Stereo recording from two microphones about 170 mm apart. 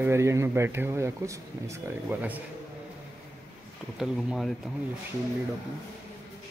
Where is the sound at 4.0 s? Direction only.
Centre (ahead or behind).